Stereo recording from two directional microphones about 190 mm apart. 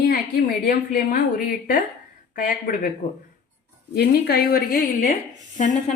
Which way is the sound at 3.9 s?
55° left (ahead or behind).